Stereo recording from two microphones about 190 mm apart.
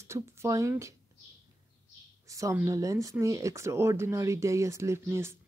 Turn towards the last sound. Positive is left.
turn(degrees=-15)  # may be behind; listen again after turning